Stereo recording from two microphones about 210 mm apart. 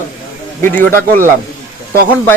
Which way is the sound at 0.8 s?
45° right (ahead or behind).